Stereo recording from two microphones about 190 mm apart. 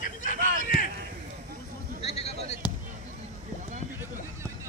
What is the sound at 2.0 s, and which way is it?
Basketball bounce, 35° left (ahead or behind).